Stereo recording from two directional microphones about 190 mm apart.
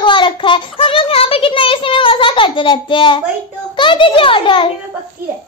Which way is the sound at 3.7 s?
25° left (ahead or behind).